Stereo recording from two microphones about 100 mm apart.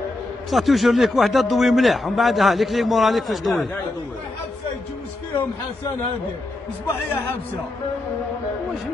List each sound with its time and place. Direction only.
0.5 s a man's voice: centre (ahead or behind)
6.9 s a man's voice: 20° left (ahead or behind)